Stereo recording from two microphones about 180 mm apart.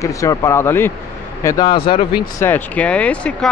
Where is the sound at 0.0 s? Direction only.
20° left (ahead or behind).